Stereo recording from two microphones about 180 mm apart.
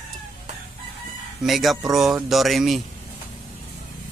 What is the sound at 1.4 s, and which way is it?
Speech, centre (ahead or behind).